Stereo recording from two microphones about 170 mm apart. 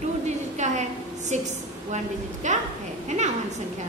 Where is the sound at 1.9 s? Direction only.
45° right (ahead or behind).